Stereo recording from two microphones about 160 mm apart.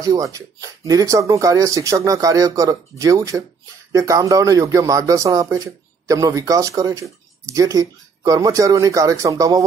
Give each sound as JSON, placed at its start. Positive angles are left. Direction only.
{"t": 0.0, "sound": "speech", "side_deg": -20}